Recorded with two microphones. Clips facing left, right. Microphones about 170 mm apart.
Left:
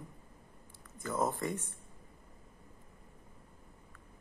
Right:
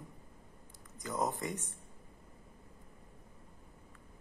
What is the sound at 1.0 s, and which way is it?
Speech, 15° right (ahead or behind).